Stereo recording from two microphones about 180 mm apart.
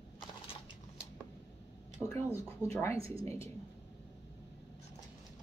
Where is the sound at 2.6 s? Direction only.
5° left (ahead or behind).